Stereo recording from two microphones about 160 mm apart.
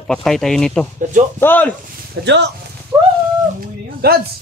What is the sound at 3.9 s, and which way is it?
Speech, 75° right (ahead or behind).